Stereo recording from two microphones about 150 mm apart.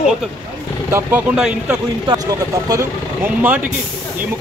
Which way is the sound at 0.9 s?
10° right (ahead or behind).